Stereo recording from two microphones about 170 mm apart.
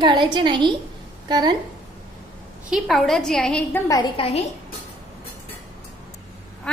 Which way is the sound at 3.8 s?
25° left (ahead or behind).